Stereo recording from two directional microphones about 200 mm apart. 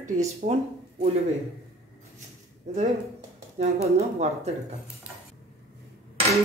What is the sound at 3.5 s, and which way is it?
Speech, 30° right (ahead or behind).